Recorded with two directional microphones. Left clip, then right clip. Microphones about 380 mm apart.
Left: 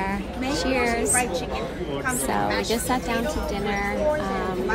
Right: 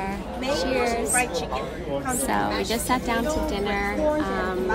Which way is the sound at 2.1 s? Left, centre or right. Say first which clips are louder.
Even; centre.